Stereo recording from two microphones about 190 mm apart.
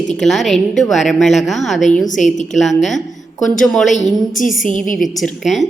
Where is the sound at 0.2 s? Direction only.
Centre (ahead or behind).